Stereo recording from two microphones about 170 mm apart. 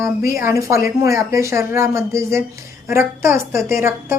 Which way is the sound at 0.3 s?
15° right (ahead or behind).